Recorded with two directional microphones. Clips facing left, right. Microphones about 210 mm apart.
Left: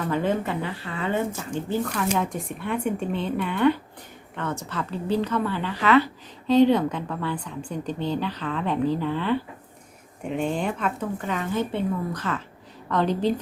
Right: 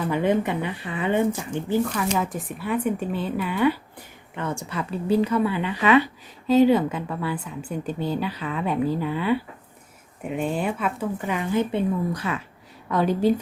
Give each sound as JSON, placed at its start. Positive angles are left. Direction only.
{"t": 0.0, "sound": "a woman's voice", "side_deg": -15}
{"t": 6.5, "sound": "a woman's voice", "side_deg": -5}